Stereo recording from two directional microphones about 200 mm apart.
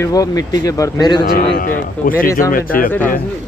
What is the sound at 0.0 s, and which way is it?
Speech, 20° left (ahead or behind).